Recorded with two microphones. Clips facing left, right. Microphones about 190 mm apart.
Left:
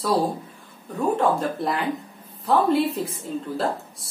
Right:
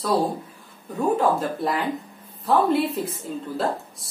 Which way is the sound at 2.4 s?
Centre (ahead or behind).